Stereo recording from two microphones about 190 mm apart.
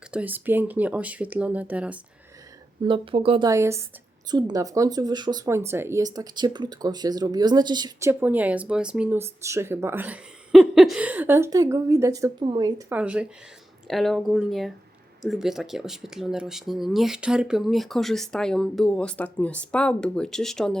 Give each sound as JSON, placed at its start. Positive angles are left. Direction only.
{"t": 0.1, "sound": "speech", "side_deg": -10}
{"t": 2.8, "sound": "speech", "side_deg": -25}
{"t": 12.9, "sound": "speech", "side_deg": -5}